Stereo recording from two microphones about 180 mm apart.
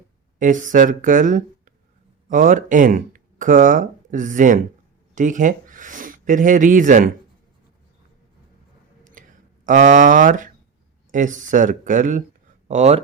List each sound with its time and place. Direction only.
0.3 s speech: 45° right (ahead or behind)
9.6 s speech: 45° right (ahead or behind)